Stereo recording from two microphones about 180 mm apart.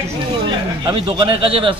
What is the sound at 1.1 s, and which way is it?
Speech, 30° right (ahead or behind).